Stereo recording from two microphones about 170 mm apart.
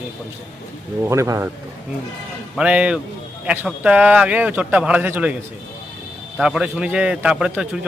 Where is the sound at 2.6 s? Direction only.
5° right (ahead or behind).